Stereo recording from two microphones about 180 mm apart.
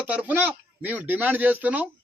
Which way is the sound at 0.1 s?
10° right (ahead or behind).